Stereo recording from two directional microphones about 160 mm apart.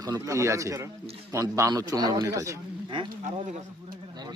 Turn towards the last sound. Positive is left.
turn(degrees=-25)  # may be behind; listen again after turning